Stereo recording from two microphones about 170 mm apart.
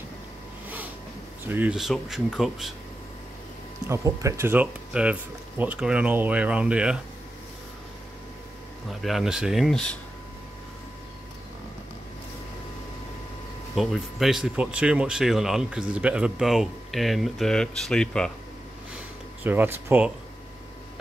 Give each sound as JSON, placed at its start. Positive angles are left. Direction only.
{"t": 1.5, "sound": "speech", "side_deg": -10}
{"t": 3.9, "sound": "speech", "side_deg": -20}
{"t": 9.0, "sound": "speech", "side_deg": 0}
{"t": 13.7, "sound": "speech", "side_deg": 0}
{"t": 19.4, "sound": "speech", "side_deg": -10}